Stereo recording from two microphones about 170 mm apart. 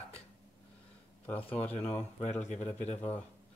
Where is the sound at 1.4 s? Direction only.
10° left (ahead or behind).